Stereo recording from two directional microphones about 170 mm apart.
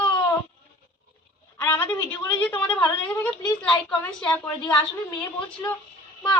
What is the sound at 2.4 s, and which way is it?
Speech, 10° left (ahead or behind).